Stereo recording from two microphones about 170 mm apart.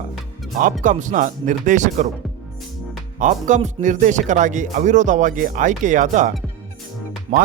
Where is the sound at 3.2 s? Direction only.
45° right (ahead or behind).